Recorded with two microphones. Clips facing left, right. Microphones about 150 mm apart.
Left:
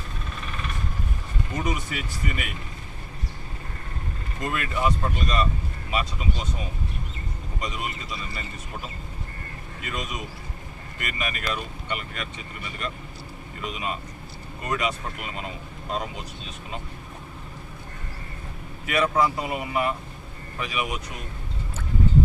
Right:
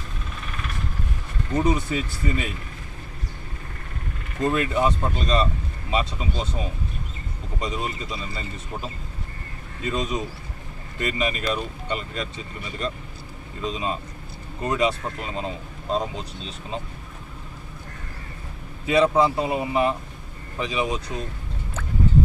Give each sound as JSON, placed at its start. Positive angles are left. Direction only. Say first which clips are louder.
{"t": 1.6, "sound": "speech", "louder": "right 7 dB", "side_deg": -30}
{"t": 4.4, "sound": "speech", "louder": "right 6 dB", "side_deg": -30}
{"t": 9.8, "sound": "speech", "louder": "right 7 dB", "side_deg": -30}
{"t": 18.9, "sound": "speech", "louder": "right 4 dB", "side_deg": -25}